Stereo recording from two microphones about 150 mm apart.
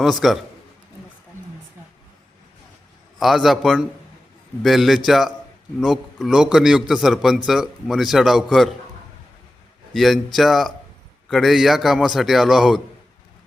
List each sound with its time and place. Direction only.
0.0 s a man's voice: centre (ahead or behind)
3.2 s a man's voice: centre (ahead or behind)
9.9 s a man's voice: centre (ahead or behind)